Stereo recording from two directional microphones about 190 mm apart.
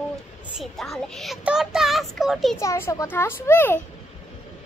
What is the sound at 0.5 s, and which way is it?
Speech, centre (ahead or behind).